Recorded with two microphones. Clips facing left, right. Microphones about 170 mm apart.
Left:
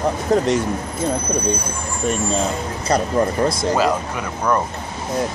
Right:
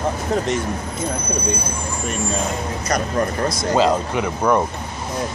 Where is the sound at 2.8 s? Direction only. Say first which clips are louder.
Left 4 dB; 30° left (ahead or behind).